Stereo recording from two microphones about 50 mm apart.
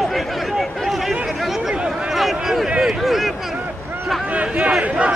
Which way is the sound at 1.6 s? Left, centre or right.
Centre.